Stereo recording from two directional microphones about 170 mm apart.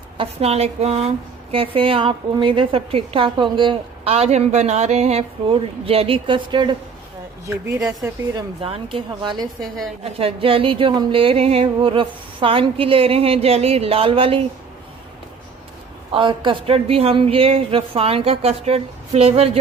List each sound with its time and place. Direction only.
0.2 s speech: 35° right (ahead or behind); by 8.4 s 20° right (ahead or behind)
8.6 s speech: 35° right (ahead or behind)
9.6 s a woman's voice: centre (ahead or behind)
10.0 s speech: 35° right (ahead or behind)
16.1 s speech: 30° right (ahead or behind)